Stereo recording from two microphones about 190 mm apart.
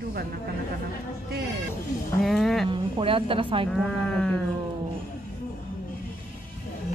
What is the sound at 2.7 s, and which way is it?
A woman's voice, 25° right (ahead or behind).